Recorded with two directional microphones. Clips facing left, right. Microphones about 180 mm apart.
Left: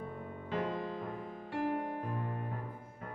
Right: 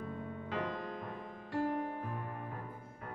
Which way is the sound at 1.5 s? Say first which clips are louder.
Even; 15° left (ahead or behind).